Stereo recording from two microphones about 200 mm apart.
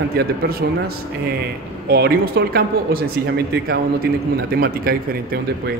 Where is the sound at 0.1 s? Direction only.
50° right (ahead or behind).